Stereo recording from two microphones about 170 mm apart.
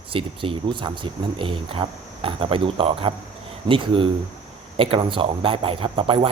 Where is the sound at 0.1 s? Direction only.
30° right (ahead or behind).